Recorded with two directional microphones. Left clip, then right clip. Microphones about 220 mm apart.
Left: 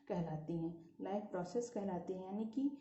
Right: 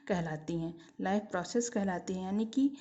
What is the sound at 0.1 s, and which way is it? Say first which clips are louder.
A woman's voice: right 8 dB; 45° right (ahead or behind).